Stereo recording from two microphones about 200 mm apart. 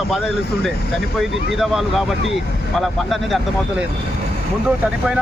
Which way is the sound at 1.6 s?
Centre (ahead or behind).